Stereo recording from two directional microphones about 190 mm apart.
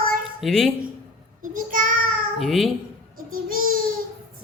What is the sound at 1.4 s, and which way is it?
Child singing, 45° right (ahead or behind).